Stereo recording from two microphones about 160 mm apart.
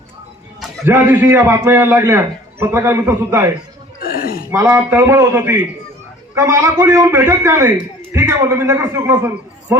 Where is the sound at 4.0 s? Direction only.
70° left (ahead or behind).